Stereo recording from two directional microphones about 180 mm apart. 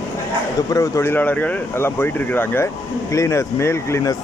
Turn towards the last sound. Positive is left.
turn(degrees=15)  # may be behind; listen again after turning